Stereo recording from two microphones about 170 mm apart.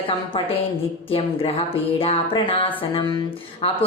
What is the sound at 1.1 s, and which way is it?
Speech, 35° left (ahead or behind).